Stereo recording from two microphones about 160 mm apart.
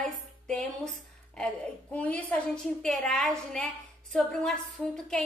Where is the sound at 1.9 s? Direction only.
10° left (ahead or behind).